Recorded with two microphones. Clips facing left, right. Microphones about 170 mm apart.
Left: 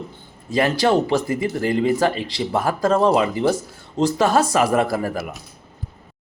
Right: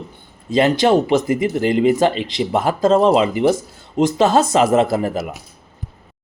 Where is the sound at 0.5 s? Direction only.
20° right (ahead or behind).